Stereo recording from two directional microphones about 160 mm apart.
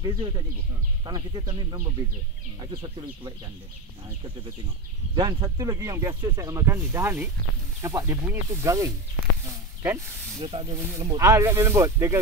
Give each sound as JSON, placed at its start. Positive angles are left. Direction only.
{"t": 0.0, "sound": "speech", "side_deg": -30}
{"t": 5.1, "sound": "speech", "side_deg": -25}
{"t": 10.4, "sound": "speech", "side_deg": -30}
{"t": 10.7, "sound": "speech", "side_deg": -15}